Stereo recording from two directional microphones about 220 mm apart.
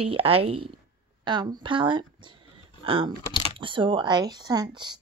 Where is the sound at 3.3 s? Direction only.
20° left (ahead or behind).